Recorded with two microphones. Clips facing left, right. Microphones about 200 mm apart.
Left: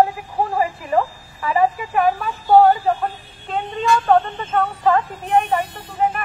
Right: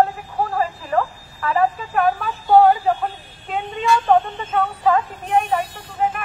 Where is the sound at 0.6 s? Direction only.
15° left (ahead or behind).